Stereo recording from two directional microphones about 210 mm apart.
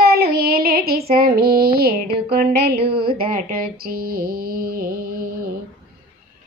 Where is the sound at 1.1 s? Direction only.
45° right (ahead or behind).